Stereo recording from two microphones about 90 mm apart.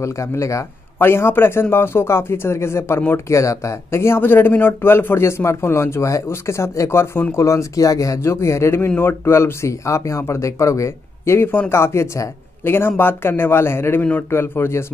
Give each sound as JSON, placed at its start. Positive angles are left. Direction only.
{"t": 0.0, "sound": "a man's voice", "side_deg": 35}